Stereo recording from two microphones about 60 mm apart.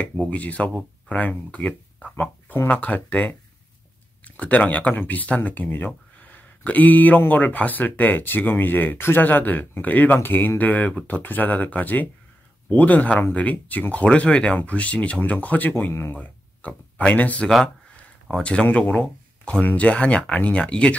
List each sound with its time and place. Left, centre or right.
0.3 s speech: left
2.1 s speech: left
2.7 s speech: left
4.4 s speech: left
15.7 s speech: left
16.2 s speech: left